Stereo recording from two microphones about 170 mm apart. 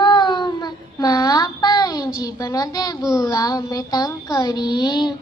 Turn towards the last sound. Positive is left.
turn(degrees=25)  # may be behind; listen again after turning